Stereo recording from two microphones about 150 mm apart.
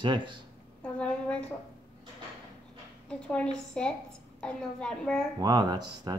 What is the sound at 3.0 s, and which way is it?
A woman's voice, 5° left (ahead or behind).